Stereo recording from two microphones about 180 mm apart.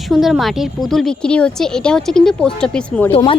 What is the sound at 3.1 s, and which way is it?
Speech, 30° left (ahead or behind).